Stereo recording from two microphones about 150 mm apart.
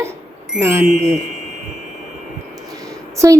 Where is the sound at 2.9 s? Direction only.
20° right (ahead or behind).